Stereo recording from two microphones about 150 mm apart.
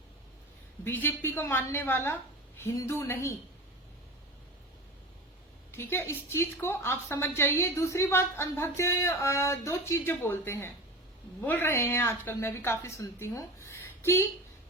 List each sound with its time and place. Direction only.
0.9 s a woman's voice: 15° left (ahead or behind)
5.7 s a woman's voice: 15° left (ahead or behind)